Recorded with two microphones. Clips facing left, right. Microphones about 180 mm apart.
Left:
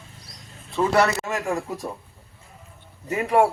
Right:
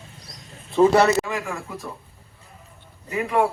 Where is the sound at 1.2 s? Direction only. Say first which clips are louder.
Left 3 dB; 40° left (ahead or behind).